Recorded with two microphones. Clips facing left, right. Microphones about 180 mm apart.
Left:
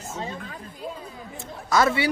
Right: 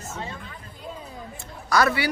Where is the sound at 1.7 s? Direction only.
25° left (ahead or behind).